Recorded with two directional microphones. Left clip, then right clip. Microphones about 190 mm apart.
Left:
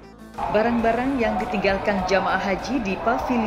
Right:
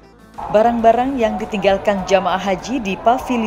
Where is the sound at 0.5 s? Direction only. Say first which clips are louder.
Right 9 dB; 40° right (ahead or behind).